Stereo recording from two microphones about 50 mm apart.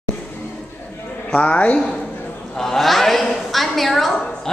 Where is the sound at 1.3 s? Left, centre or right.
Left.